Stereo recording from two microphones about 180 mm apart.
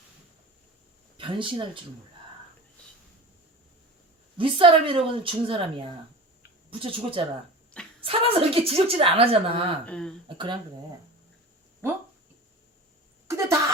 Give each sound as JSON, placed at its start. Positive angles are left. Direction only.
{"t": 1.1, "sound": "speech", "side_deg": -25}
{"t": 4.4, "sound": "a woman's voice", "side_deg": -30}
{"t": 6.7, "sound": "a woman's voice", "side_deg": -30}
{"t": 9.8, "sound": "speech", "side_deg": 5}
{"t": 10.2, "sound": "a woman's voice", "side_deg": -25}
{"t": 13.2, "sound": "a sound", "side_deg": -15}